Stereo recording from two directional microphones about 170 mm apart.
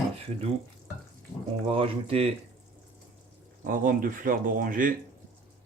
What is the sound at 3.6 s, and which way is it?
Speech, 55° right (ahead or behind).